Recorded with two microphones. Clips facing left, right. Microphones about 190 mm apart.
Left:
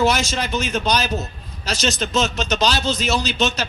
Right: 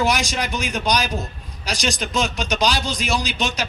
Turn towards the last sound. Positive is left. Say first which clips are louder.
# left 3 dB
turn(degrees=-10)  # may be behind; listen again after turning